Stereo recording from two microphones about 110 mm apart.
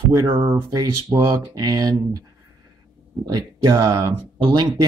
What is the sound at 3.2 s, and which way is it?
Speech, 35° right (ahead or behind).